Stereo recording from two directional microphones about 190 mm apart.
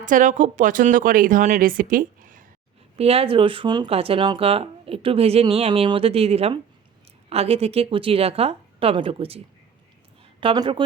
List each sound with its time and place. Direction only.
0.0 s speech: 45° right (ahead or behind)
2.9 s speech: 30° right (ahead or behind)
10.4 s speech: 25° right (ahead or behind)